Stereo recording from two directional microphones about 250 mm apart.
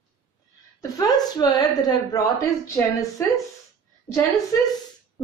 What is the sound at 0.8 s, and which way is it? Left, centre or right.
A woman's voice, centre.